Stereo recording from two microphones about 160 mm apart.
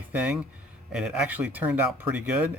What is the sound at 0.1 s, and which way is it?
Speech, 10° right (ahead or behind).